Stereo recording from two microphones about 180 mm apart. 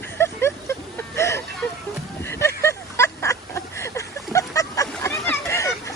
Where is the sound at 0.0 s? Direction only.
15° left (ahead or behind).